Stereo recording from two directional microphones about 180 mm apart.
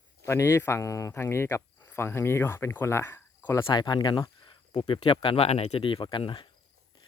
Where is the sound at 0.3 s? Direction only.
15° left (ahead or behind).